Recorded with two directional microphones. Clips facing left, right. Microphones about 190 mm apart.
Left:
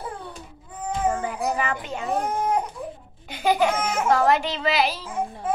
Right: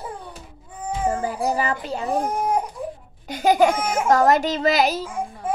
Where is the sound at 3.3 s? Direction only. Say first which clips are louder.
Right 4 dB; 45° right (ahead or behind).